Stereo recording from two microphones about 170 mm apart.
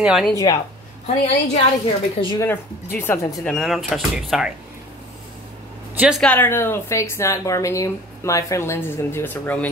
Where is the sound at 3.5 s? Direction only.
Centre (ahead or behind).